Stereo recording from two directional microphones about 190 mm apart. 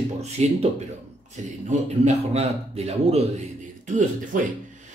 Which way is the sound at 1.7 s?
35° right (ahead or behind).